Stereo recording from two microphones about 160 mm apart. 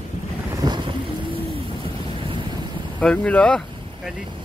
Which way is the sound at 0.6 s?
25° right (ahead or behind).